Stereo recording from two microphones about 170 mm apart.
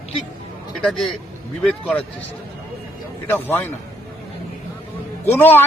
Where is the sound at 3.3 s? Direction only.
10° left (ahead or behind).